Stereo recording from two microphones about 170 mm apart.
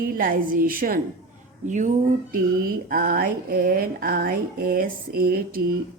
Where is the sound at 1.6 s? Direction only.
45° right (ahead or behind).